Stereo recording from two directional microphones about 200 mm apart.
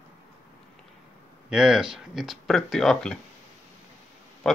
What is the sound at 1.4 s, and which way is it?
Speech, 5° right (ahead or behind).